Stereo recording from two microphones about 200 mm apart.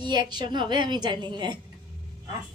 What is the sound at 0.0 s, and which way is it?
A woman's voice, 20° right (ahead or behind).